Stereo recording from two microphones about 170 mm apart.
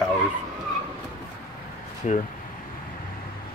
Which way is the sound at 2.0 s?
40° left (ahead or behind).